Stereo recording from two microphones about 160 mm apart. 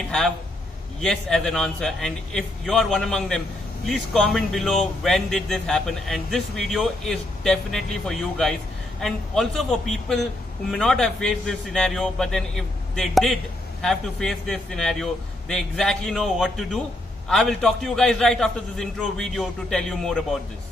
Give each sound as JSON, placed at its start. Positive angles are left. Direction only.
{"t": 1.0, "sound": "a man's voice", "side_deg": 5}